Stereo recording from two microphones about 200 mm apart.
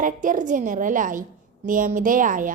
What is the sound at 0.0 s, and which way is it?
A woman's voice, 40° right (ahead or behind).